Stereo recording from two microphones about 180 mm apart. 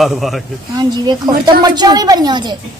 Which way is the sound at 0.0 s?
Centre (ahead or behind).